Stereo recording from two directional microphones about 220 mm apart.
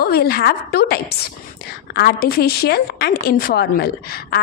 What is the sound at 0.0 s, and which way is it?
Speech, 45° left (ahead or behind).